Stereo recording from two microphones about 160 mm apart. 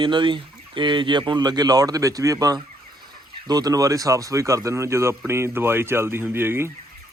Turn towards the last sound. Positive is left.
turn(degrees=-15)  # may be behind; listen again after turning